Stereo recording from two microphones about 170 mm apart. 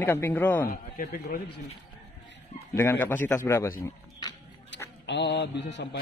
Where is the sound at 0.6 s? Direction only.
55° left (ahead or behind).